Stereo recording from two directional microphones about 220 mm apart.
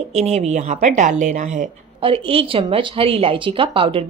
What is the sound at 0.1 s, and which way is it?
Speech, 30° right (ahead or behind).